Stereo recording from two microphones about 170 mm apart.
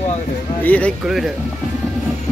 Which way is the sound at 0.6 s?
10° left (ahead or behind).